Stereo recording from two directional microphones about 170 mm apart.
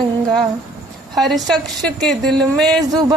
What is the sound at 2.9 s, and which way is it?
Speech, 20° right (ahead or behind).